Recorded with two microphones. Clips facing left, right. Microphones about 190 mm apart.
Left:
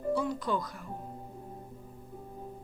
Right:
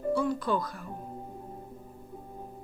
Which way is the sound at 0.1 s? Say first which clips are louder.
Right 2 dB; 20° left (ahead or behind).